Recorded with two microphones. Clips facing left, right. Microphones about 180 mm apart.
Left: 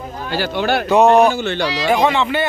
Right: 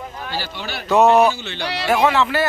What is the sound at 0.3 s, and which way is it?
Speech, 55° left (ahead or behind).